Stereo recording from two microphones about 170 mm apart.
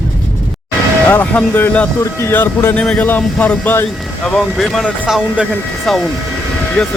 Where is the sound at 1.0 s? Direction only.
10° left (ahead or behind).